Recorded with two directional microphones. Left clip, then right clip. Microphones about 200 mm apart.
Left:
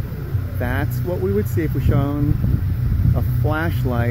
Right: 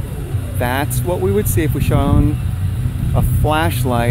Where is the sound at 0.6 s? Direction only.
15° right (ahead or behind).